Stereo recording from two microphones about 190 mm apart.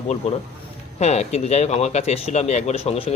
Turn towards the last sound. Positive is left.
turn(degrees=30)  # may be behind; listen again after turning